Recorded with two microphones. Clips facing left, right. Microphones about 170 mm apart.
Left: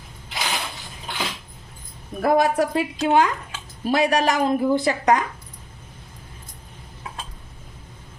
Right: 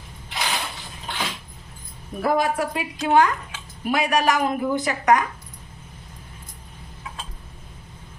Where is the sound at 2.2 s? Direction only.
45° left (ahead or behind).